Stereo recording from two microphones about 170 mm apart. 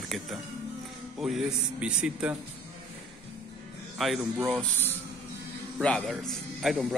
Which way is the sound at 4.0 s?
Centre (ahead or behind).